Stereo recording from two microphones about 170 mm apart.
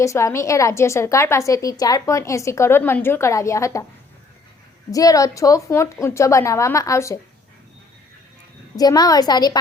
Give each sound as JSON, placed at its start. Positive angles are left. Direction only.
{"t": 0.0, "sound": "a woman's voice", "side_deg": 15}
{"t": 4.9, "sound": "a woman's voice", "side_deg": 20}
{"t": 8.7, "sound": "a woman's voice", "side_deg": 20}